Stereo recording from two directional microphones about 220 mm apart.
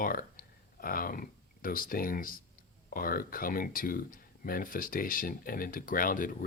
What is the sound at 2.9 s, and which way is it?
Speech, 40° left (ahead or behind).